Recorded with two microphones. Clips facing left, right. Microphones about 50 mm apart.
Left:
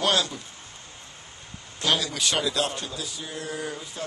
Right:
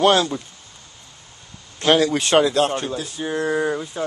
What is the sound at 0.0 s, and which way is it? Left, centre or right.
Speech, right.